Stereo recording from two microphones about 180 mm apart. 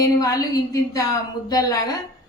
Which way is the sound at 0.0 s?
20° left (ahead or behind).